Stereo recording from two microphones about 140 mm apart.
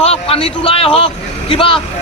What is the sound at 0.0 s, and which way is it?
Speech, 45° left (ahead or behind).